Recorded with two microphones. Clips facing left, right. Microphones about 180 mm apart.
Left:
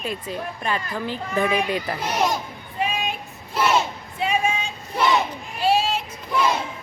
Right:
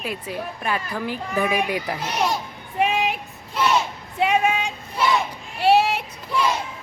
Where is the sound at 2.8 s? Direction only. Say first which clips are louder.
Right 5 dB; 70° right (ahead or behind).